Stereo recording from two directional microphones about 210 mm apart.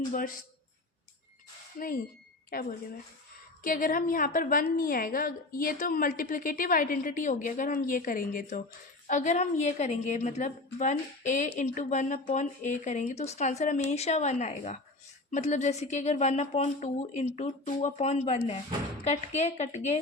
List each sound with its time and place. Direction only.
0.1 s a woman's voice: 40° left (ahead or behind)
2.5 s a woman's voice: 45° left (ahead or behind)